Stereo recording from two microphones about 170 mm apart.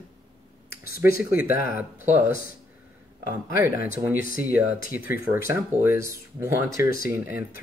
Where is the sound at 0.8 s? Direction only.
60° left (ahead or behind).